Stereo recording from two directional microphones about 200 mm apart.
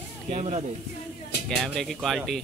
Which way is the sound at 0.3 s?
35° right (ahead or behind).